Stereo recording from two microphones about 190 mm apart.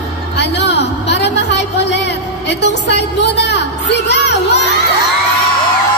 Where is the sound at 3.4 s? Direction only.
65° left (ahead or behind).